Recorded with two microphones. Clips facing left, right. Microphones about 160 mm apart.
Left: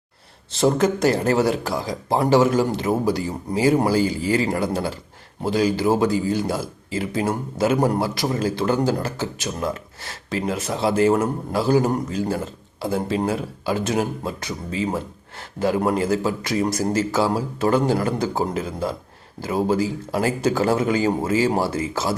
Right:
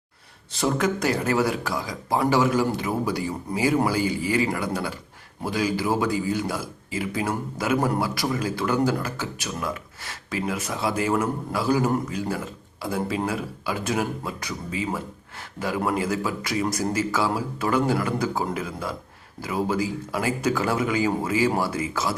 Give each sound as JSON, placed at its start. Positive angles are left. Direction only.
{"t": 0.6, "sound": "a man's voice", "side_deg": 30}